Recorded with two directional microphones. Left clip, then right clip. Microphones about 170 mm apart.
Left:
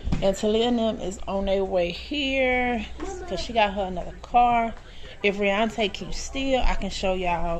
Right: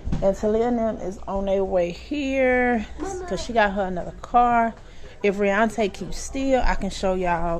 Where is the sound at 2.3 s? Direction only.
90° right.